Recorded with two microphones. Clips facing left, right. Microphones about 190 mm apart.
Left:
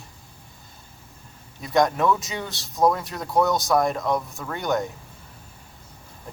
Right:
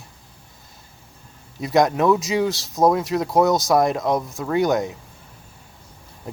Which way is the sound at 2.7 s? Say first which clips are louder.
Right 3 dB; 20° right (ahead or behind).